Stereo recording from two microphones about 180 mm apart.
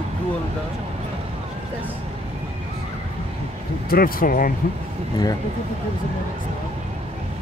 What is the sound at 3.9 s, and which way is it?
Speech, 55° left (ahead or behind).